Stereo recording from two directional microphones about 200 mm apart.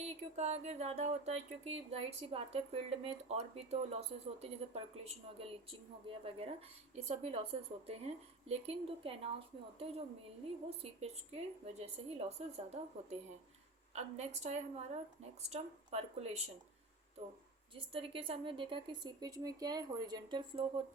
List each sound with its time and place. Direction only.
0.3 s speech: 30° right (ahead or behind)
10.7 s speech: 30° right (ahead or behind)
17.7 s speech: 25° right (ahead or behind)